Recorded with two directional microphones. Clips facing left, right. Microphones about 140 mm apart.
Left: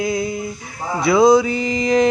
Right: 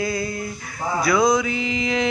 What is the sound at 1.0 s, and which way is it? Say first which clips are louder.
Music: left 6 dB; 25° left (ahead or behind).